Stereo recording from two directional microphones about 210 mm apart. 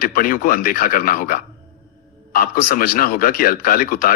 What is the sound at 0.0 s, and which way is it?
Speech, 45° left (ahead or behind).